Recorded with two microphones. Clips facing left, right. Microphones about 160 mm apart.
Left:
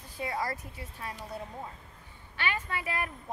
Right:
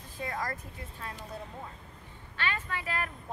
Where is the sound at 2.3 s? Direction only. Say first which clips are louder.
Left 1 dB; 10° left (ahead or behind).